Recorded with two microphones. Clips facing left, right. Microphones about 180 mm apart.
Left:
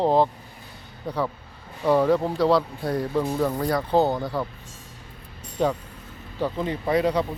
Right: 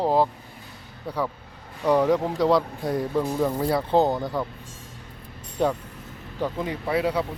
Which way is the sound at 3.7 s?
20° right (ahead or behind).